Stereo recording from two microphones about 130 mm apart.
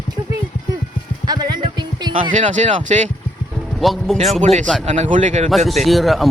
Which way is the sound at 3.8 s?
Centre (ahead or behind).